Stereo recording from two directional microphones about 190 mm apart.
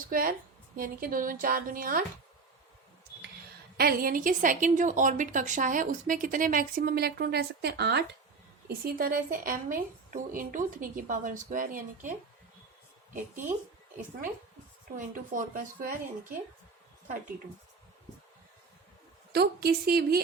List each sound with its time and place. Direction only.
0.1 s a woman's voice: 50° right (ahead or behind)
3.8 s a woman's voice: 50° right (ahead or behind)
8.8 s a woman's voice: 50° right (ahead or behind)
13.1 s speech: 40° right (ahead or behind)
14.9 s a woman's voice: 45° right (ahead or behind)
19.3 s a woman's voice: 55° right (ahead or behind)